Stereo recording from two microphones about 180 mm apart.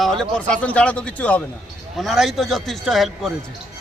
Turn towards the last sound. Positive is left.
turn(degrees=0)  # may be behind; listen again after turning